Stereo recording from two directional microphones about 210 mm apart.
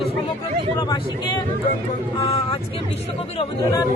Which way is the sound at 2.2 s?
25° left (ahead or behind).